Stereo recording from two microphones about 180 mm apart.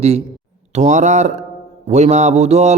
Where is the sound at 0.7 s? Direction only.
40° right (ahead or behind).